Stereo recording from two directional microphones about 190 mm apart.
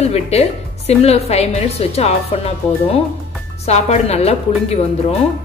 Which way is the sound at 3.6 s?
35° left (ahead or behind).